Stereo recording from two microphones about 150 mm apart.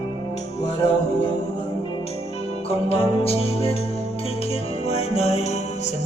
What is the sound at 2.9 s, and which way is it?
Music, 40° left (ahead or behind).